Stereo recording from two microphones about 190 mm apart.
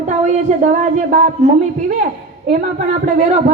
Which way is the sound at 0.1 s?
40° right (ahead or behind).